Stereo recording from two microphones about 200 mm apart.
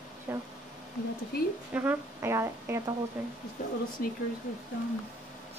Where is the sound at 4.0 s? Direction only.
45° left (ahead or behind).